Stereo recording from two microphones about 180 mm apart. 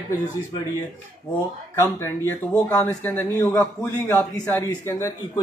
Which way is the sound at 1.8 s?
15° left (ahead or behind).